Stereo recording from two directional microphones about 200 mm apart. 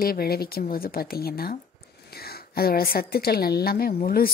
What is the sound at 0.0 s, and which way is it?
A woman's voice, 50° left (ahead or behind).